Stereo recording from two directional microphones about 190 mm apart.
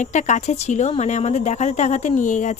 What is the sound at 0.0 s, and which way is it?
Speech, 40° left (ahead or behind).